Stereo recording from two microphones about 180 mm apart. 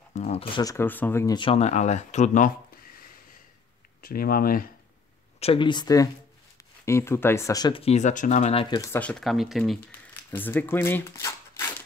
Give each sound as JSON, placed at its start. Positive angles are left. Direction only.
{"t": 0.1, "sound": "speech", "side_deg": 35}
{"t": 0.6, "sound": "speech", "side_deg": 15}
{"t": 1.3, "sound": "speech", "side_deg": 30}
{"t": 4.0, "sound": "speech", "side_deg": 55}
{"t": 5.4, "sound": "speech", "side_deg": 30}
{"t": 8.6, "sound": "speech", "side_deg": 20}
{"t": 9.0, "sound": "speech", "side_deg": 0}
{"t": 10.3, "sound": "speech", "side_deg": 10}